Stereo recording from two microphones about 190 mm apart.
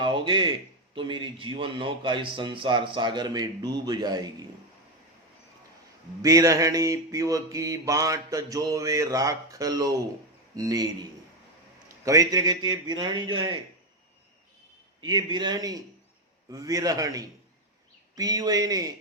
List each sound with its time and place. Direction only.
0.0 s speech: 25° right (ahead or behind)
6.2 s mantra: 15° right (ahead or behind)
10.5 s speech: 20° right (ahead or behind)
15.0 s speech: 25° right (ahead or behind)